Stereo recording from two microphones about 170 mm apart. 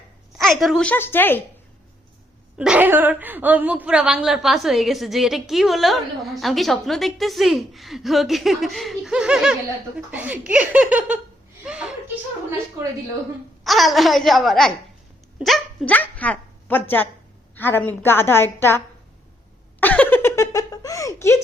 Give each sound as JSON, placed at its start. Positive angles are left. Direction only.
{"t": 0.3, "sound": "a woman's voice", "side_deg": 0}
{"t": 2.6, "sound": "a woman's voice", "side_deg": -10}
{"t": 11.6, "sound": "chuckle", "side_deg": -5}
{"t": 13.7, "sound": "a woman's voice", "side_deg": 0}
{"t": 19.8, "sound": "giggle", "side_deg": 10}